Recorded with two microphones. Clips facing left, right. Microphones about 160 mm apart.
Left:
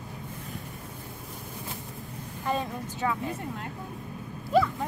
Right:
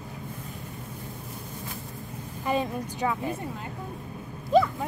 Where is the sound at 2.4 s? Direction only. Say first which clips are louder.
Right 3 dB; 15° right (ahead or behind).